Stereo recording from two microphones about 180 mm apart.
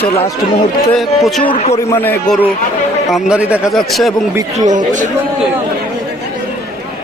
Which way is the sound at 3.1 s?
5° right (ahead or behind).